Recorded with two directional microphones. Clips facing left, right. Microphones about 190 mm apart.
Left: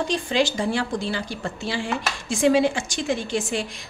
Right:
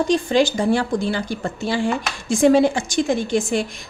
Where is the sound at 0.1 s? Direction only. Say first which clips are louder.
Right 6 dB; 45° right (ahead or behind).